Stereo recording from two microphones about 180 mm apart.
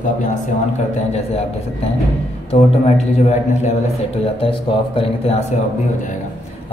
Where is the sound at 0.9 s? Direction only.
35° left (ahead or behind).